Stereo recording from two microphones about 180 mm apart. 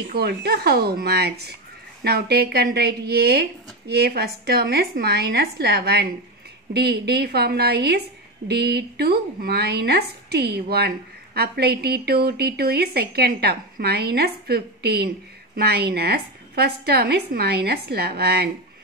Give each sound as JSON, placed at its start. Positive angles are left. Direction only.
{"t": 0.1, "sound": "a woman's voice", "side_deg": -60}